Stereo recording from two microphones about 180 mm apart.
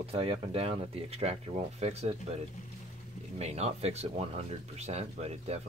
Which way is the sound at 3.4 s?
35° right (ahead or behind).